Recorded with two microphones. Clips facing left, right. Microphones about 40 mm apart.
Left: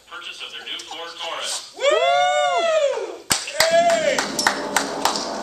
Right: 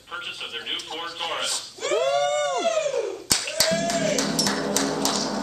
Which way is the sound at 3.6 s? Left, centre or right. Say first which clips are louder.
Left 8 dB; left.